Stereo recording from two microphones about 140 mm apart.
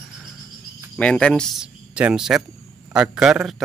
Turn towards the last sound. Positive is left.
turn(degrees=-5)  # may be behind; listen again after turning